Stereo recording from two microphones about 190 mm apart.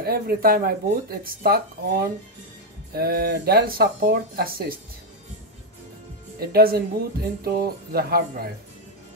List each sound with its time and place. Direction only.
0.0 s speech: 50° right (ahead or behind)
6.4 s speech: 50° right (ahead or behind)